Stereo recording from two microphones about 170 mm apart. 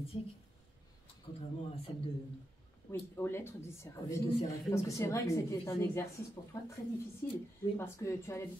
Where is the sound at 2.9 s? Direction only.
15° left (ahead or behind).